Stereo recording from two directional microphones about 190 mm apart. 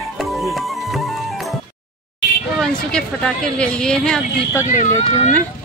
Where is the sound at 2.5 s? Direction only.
5° left (ahead or behind).